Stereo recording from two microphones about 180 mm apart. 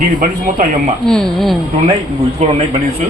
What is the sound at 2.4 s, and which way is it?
Speech, 40° right (ahead or behind).